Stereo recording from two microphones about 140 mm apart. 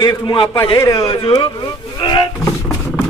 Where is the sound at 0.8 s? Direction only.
25° left (ahead or behind).